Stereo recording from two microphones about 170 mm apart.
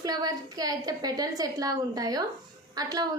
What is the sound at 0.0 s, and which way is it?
A woman's voice, 20° right (ahead or behind).